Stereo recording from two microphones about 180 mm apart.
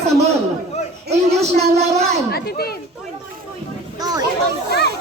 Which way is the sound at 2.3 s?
60° left (ahead or behind).